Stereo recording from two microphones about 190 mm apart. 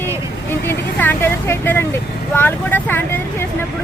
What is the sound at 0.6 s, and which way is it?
Speech, 10° left (ahead or behind).